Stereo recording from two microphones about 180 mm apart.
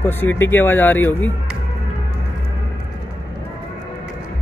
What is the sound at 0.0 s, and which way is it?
Speech, 10° left (ahead or behind).